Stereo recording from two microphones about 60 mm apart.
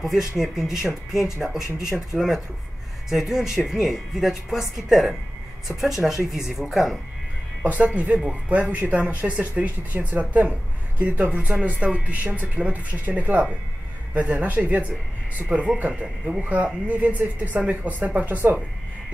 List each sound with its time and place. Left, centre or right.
0.0 s speech: centre
7.6 s speech: right